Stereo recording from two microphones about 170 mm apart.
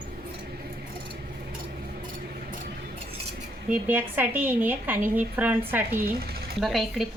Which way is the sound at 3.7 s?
10° right (ahead or behind).